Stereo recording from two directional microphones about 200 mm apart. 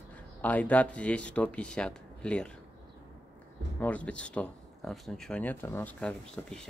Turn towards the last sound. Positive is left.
turn(degrees=5)  # may be behind; listen again after turning